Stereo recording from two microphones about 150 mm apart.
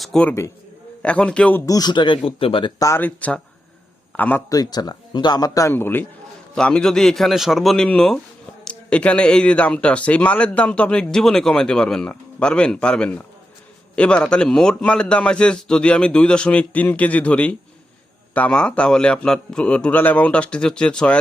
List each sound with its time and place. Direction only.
0.0 s speech: 5° left (ahead or behind)
1.6 s a man's voice: 25° left (ahead or behind)
3.0 s speech: 10° left (ahead or behind)
4.4 s a man's voice: 25° left (ahead or behind); by 21.2 s 5° left (ahead or behind)